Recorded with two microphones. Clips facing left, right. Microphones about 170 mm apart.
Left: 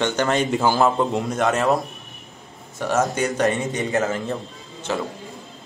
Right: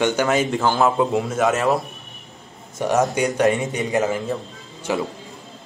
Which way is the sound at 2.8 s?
15° right (ahead or behind).